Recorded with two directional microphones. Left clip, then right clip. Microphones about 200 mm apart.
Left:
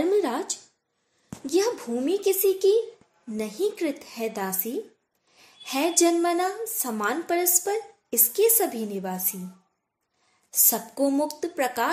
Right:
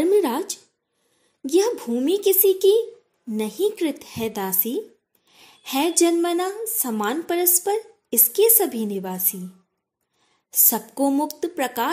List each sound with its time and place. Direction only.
0.0 s a sound: 35° right (ahead or behind)
1.4 s a woman's voice: 40° right (ahead or behind)
10.5 s a woman's voice: 45° right (ahead or behind)